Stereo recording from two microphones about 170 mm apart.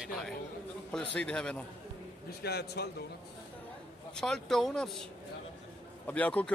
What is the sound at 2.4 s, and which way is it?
Speech, 75° left (ahead or behind).